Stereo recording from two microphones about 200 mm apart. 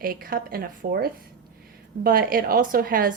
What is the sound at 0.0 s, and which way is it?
Speech, 45° right (ahead or behind).